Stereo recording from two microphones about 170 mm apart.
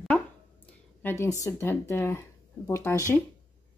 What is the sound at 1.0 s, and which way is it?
A woman's voice, 15° left (ahead or behind).